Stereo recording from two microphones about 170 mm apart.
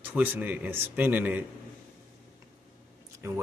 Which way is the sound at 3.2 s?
15° right (ahead or behind).